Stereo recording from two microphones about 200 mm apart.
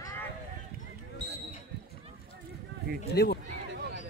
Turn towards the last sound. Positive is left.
turn(degrees=55)  # may be behind; listen again after turning